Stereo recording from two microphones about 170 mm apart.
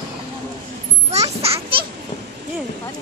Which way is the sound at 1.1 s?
35° right (ahead or behind).